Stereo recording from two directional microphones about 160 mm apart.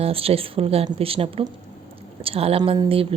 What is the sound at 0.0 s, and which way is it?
Speech, 35° right (ahead or behind).